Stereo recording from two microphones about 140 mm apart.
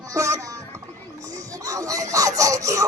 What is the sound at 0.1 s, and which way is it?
Speech, 25° right (ahead or behind).